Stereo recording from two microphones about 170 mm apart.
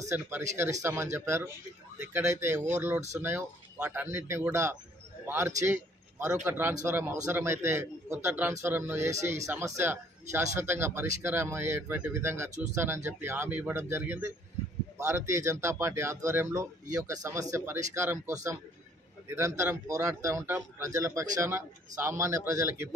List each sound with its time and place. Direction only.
0.6 s a man's voice: 15° right (ahead or behind)
5.6 s a sound: 15° right (ahead or behind)
6.4 s speech: 15° right (ahead or behind)
9.1 s speech: 45° right (ahead or behind)
9.4 s speech: 15° right (ahead or behind)